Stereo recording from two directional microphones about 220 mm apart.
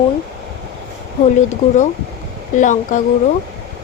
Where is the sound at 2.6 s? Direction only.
35° left (ahead or behind).